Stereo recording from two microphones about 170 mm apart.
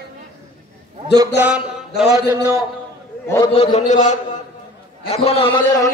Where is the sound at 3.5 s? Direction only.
40° left (ahead or behind).